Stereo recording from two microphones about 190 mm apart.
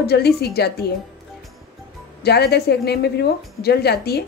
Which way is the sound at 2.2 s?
60° left (ahead or behind).